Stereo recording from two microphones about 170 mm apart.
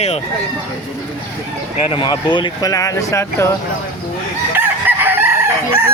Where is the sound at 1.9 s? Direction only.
30° left (ahead or behind).